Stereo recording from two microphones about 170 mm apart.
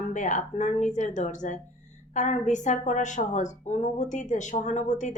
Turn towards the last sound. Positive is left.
turn(degrees=45)  # may be behind; listen again after turning